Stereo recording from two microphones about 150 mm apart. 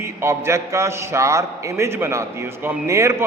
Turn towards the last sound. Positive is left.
turn(degrees=-20)  # may be behind; listen again after turning